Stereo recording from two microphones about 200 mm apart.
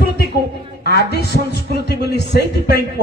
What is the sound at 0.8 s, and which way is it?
A man's voice, 55° left (ahead or behind).